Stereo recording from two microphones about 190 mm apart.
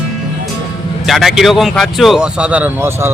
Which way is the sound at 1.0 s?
Centre (ahead or behind).